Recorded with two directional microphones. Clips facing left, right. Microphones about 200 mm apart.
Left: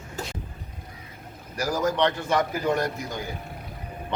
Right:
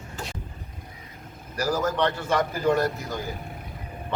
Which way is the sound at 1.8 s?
15° left (ahead or behind).